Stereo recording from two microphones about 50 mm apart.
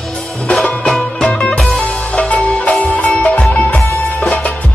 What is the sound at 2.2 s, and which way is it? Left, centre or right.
Music, left.